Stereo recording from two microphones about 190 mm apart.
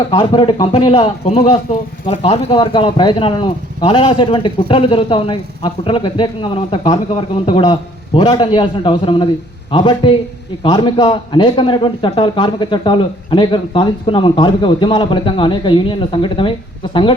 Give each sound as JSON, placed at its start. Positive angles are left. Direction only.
{"t": 0.1, "sound": "speech", "side_deg": 25}